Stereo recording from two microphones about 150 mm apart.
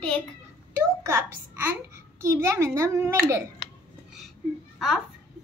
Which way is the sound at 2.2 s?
15° right (ahead or behind).